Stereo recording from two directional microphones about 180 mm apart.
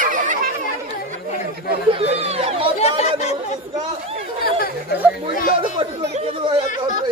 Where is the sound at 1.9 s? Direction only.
35° right (ahead or behind).